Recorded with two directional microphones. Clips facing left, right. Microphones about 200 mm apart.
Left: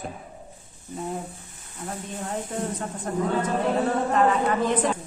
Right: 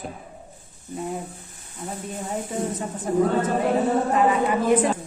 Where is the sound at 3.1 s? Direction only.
10° right (ahead or behind).